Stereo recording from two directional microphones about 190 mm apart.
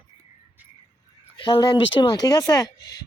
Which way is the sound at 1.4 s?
25° left (ahead or behind).